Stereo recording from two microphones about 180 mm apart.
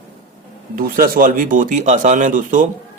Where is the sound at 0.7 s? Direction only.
50° right (ahead or behind).